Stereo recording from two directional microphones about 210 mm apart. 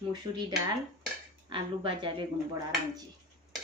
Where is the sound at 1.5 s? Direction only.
25° right (ahead or behind).